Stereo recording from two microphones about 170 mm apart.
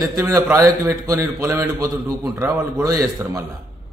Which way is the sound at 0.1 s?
20° right (ahead or behind).